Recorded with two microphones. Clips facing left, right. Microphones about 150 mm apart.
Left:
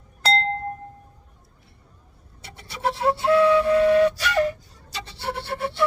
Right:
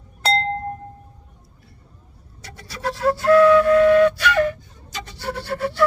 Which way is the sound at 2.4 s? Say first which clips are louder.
Left 1 dB; 25° left (ahead or behind).